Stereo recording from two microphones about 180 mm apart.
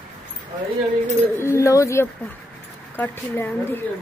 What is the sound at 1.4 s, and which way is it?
Speech, 15° left (ahead or behind).